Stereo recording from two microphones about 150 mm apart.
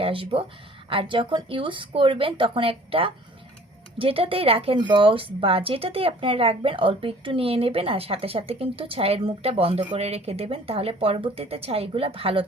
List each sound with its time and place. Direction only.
0.0 s speech: 35° right (ahead or behind)